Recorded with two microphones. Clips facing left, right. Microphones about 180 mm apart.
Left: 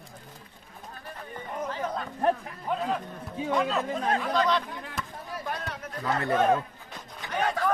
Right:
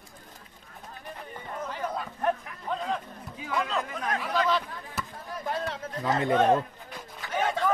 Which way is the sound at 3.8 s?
30° left (ahead or behind).